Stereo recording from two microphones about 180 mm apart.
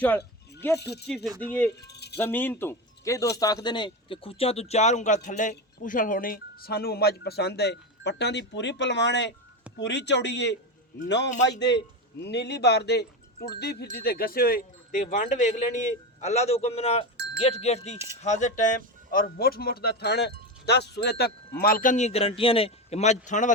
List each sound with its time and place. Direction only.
0.0 s speech: 10° left (ahead or behind)
1.8 s music: 65° left (ahead or behind)
2.1 s speech: 10° left (ahead or behind); by 17.1 s 35° left (ahead or behind)
17.4 s wind chime: 35° left (ahead or behind)
18.2 s speech: 40° left (ahead or behind)
19.2 s speech: 60° left (ahead or behind); by 23.5 s 40° left (ahead or behind)